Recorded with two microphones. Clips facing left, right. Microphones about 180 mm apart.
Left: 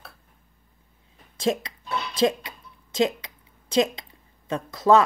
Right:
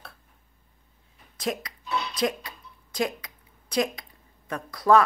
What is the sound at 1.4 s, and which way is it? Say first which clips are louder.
Speech: left 6 dB; 25° left (ahead or behind).